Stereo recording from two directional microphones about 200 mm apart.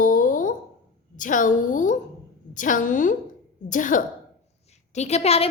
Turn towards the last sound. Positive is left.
turn(degrees=30)  # may be behind; listen again after turning